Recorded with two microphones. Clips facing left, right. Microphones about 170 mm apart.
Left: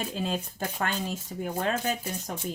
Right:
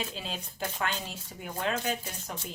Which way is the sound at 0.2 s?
50° left (ahead or behind).